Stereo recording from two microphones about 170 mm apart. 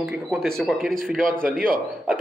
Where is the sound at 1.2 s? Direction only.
55° right (ahead or behind).